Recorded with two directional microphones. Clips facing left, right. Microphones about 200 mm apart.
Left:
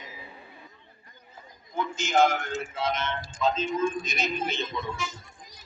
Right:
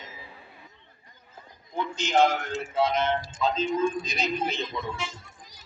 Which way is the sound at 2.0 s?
35° right (ahead or behind).